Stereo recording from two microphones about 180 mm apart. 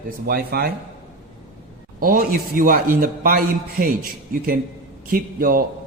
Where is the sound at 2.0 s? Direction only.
55° right (ahead or behind).